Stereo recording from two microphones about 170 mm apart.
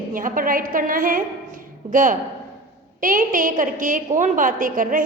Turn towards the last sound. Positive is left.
turn(degrees=-50)  # may be behind; listen again after turning